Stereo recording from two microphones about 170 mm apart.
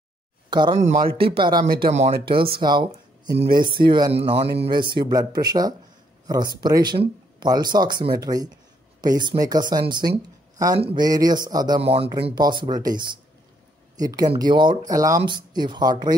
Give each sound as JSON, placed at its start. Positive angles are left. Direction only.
{"t": 0.5, "sound": "speech", "side_deg": -25}
{"t": 0.8, "sound": "speech", "side_deg": -45}
{"t": 1.1, "sound": "speech", "side_deg": -65}
{"t": 1.4, "sound": "speech", "side_deg": -25}
{"t": 1.8, "sound": "speech", "side_deg": -40}
{"t": 11.1, "sound": "speech", "side_deg": -20}
{"t": 13.9, "sound": "speech", "side_deg": -20}